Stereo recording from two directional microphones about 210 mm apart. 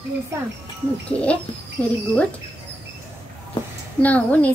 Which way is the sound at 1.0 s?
5° left (ahead or behind).